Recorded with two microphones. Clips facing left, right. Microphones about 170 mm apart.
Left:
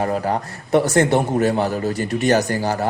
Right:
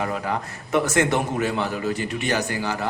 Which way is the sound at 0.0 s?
40° left (ahead or behind).